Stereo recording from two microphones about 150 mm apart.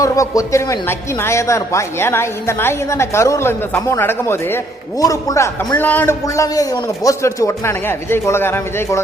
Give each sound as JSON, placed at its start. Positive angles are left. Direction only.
{"t": 0.0, "sound": "a man's voice", "side_deg": 20}
{"t": 6.2, "sound": "speech", "side_deg": 20}